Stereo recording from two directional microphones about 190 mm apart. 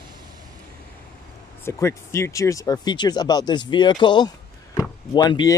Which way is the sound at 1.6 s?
15° left (ahead or behind).